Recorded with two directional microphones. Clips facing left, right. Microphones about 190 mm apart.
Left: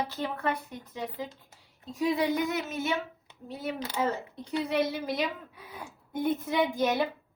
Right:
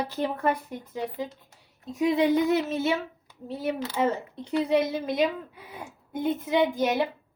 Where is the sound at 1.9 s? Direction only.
20° right (ahead or behind).